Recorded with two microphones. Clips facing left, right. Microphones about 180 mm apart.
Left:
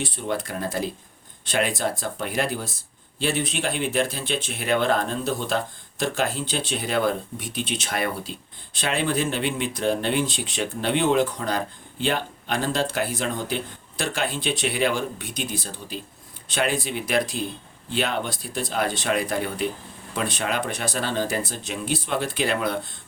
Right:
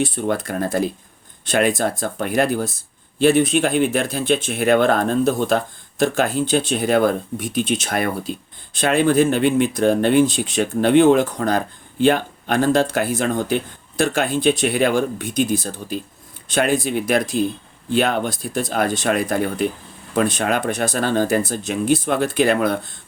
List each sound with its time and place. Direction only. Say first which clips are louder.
0.0 s speech: right 7 dB; 50° right (ahead or behind)